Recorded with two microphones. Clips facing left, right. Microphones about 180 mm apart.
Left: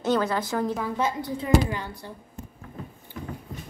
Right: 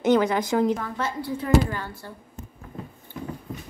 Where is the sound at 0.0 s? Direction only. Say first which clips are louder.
Right 4 dB; 20° right (ahead or behind).